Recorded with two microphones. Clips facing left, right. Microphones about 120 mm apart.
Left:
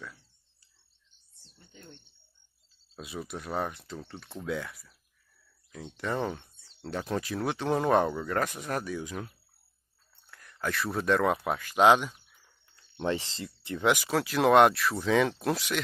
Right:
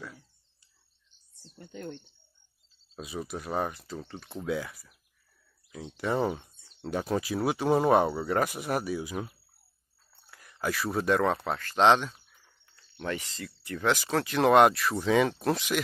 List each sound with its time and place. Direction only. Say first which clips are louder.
1.6 s speech: right 12 dB; 80° right
3.0 s speech: right 2 dB; centre (ahead or behind)
11.3 s speech: left 1 dB; 10° left (ahead or behind)
13.0 s speech: left 4 dB; 25° left (ahead or behind)
13.8 s speech: left 1 dB; 10° left (ahead or behind)
14.1 s speech: right 1 dB; centre (ahead or behind)